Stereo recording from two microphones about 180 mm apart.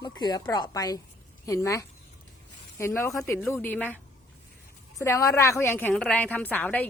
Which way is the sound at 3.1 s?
Centre (ahead or behind).